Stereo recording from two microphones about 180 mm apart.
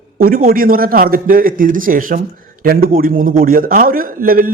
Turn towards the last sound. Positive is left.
turn(degrees=-50)  # may be behind; listen again after turning